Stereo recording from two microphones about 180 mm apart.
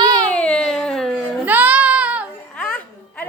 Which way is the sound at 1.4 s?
10° right (ahead or behind).